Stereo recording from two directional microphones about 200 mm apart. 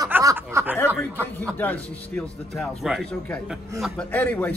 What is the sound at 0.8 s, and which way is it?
Speech, 10° right (ahead or behind).